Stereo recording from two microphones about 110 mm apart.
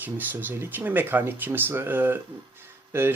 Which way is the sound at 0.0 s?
15° right (ahead or behind).